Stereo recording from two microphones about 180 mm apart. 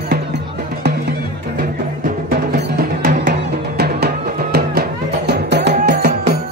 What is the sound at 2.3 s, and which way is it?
Music, 55° right (ahead or behind).